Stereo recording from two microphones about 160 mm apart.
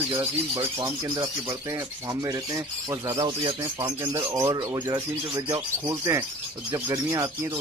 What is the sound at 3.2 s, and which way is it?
Speech, 30° right (ahead or behind).